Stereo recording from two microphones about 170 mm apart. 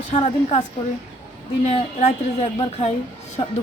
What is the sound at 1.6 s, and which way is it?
Speech, 40° left (ahead or behind).